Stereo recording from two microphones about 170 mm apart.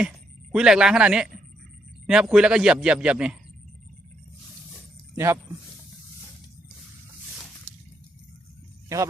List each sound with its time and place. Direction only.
0.5 s a man's voice: 5° right (ahead or behind)
5.1 s speech: 15° right (ahead or behind)